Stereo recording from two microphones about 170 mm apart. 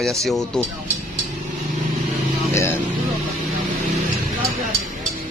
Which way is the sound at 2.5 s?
15° left (ahead or behind).